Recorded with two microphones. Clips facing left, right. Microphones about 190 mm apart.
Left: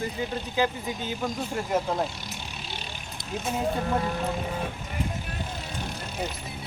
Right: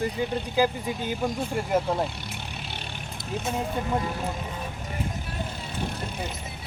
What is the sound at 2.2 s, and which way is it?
Vehicle, 60° right (ahead or behind).